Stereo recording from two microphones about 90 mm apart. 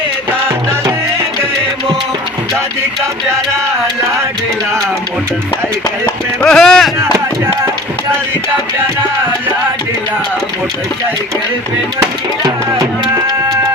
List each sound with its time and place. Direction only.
0.4 s music: 30° right (ahead or behind)
6.4 s speech: 5° left (ahead or behind)
12.4 s speech: 60° right (ahead or behind)